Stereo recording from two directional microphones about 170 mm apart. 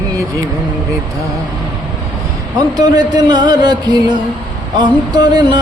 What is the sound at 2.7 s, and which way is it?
Music, 25° right (ahead or behind).